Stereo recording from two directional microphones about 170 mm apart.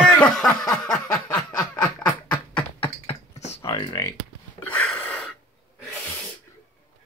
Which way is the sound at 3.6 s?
20° left (ahead or behind).